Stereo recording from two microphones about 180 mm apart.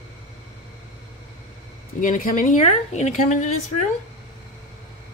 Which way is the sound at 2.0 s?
45° left (ahead or behind).